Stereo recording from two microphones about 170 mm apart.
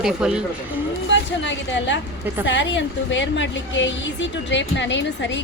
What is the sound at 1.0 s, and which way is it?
A woman's voice, 90° left.